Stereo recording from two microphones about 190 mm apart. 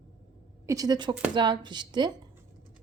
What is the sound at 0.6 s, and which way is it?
Speech, 20° right (ahead or behind).